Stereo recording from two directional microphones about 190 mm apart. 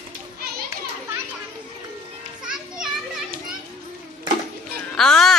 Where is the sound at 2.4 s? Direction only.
5° right (ahead or behind).